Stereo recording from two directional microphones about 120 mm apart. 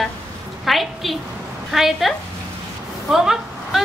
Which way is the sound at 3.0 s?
5° right (ahead or behind).